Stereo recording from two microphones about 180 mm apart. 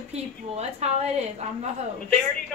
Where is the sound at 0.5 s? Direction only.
35° right (ahead or behind).